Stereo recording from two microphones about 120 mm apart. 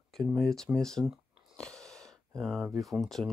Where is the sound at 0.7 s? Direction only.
5° left (ahead or behind).